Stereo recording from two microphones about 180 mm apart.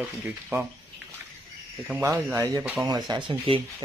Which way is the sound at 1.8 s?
5° right (ahead or behind).